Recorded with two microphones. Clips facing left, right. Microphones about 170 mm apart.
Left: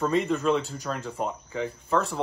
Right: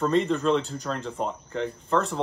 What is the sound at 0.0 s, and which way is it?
Speech, centre (ahead or behind).